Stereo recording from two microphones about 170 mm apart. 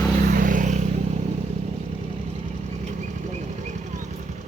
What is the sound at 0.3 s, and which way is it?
Vehicle, 50° right (ahead or behind).